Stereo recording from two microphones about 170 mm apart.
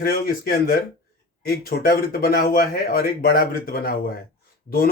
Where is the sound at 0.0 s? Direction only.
60° left (ahead or behind).